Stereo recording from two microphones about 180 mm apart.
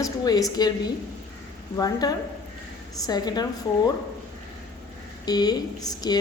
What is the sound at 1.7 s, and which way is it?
A woman's voice, 20° left (ahead or behind).